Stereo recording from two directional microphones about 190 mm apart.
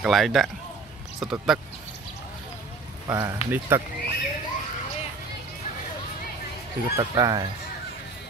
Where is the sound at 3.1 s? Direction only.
15° right (ahead or behind).